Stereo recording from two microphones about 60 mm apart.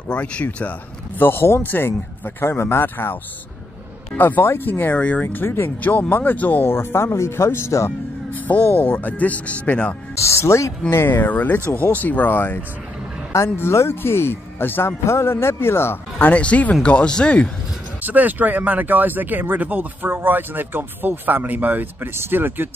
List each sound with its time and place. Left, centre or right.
0.1 s speech: left
1.1 s speech: left
4.2 s speech: left
5.3 s speech: left
6.6 s speech: left
8.3 s speech: left
10.1 s speech: left
10.9 s speech: left; by 17.5 s centre
18.0 s speech: right